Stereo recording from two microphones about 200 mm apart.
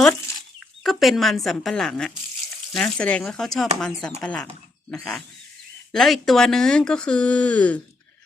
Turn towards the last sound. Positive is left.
turn(degrees=5)  # may be behind; listen again after turning